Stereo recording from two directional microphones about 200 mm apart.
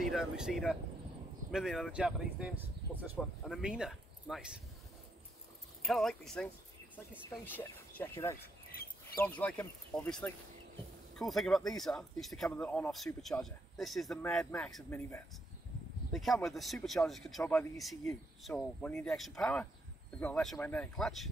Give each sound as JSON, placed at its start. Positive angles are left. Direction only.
{"t": 0.1, "sound": "speech", "side_deg": -5}
{"t": 5.9, "sound": "speech", "side_deg": 0}
{"t": 8.4, "sound": "bird", "side_deg": 50}
{"t": 9.2, "sound": "speech", "side_deg": 5}
{"t": 14.9, "sound": "speech", "side_deg": 15}
{"t": 16.1, "sound": "speech", "side_deg": 0}